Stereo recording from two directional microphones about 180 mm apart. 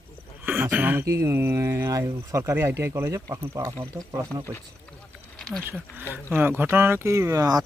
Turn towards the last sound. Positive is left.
turn(degrees=-20)  # may be behind; listen again after turning